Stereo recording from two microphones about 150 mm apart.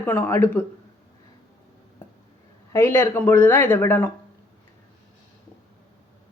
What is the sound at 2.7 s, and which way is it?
A woman's voice, 15° left (ahead or behind).